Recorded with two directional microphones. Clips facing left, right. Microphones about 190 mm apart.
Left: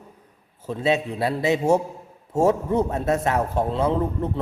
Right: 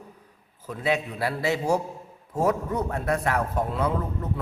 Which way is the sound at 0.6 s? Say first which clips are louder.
Left 4 dB; 25° left (ahead or behind).